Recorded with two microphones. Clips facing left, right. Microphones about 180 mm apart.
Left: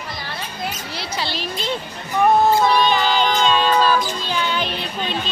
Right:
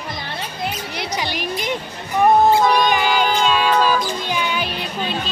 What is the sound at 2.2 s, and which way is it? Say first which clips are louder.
Music: right 2 dB; 15° right (ahead or behind).